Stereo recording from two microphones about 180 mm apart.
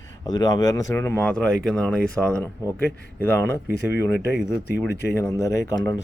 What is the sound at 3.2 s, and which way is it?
Speech, 10° left (ahead or behind).